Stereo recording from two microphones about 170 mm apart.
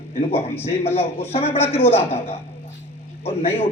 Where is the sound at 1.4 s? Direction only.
10° left (ahead or behind).